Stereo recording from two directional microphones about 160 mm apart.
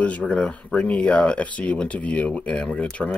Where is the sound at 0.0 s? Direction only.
10° left (ahead or behind).